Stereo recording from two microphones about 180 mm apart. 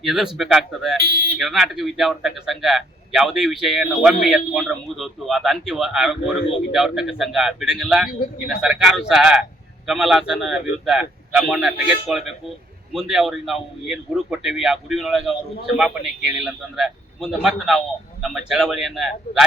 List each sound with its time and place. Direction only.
0.0 s a man's voice: centre (ahead or behind)
1.0 s speech: 55° right (ahead or behind)
1.4 s a man's voice: centre (ahead or behind)